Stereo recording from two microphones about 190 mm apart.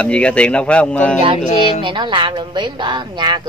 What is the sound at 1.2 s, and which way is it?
A woman's voice, 25° right (ahead or behind).